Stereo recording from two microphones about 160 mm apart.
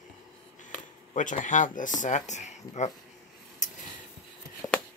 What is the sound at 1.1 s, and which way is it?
Speech, 50° left (ahead or behind).